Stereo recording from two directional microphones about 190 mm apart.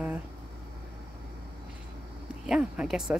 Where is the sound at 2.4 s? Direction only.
5° right (ahead or behind).